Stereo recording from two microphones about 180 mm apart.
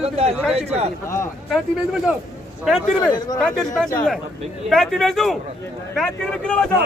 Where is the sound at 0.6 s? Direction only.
35° right (ahead or behind).